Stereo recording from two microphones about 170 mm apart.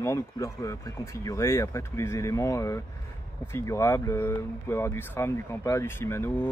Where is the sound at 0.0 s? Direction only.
15° left (ahead or behind).